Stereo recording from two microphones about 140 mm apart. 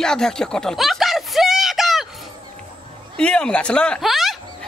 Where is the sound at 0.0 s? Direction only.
5° left (ahead or behind).